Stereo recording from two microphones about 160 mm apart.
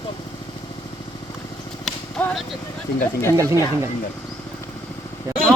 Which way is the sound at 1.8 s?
5° left (ahead or behind).